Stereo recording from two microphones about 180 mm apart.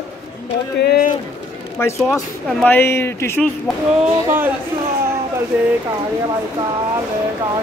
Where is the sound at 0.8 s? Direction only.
60° left (ahead or behind).